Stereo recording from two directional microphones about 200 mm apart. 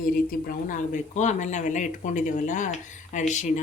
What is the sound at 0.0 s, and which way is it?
A man's voice, 45° left (ahead or behind).